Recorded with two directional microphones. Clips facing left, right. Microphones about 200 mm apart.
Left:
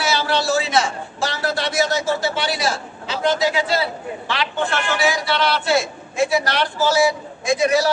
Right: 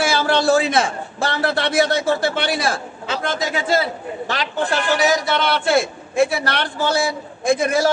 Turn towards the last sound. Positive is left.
turn(degrees=-50)  # may be behind; listen again after turning